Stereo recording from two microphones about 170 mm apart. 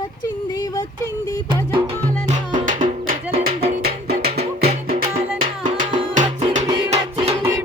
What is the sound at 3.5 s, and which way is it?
Music, 35° right (ahead or behind).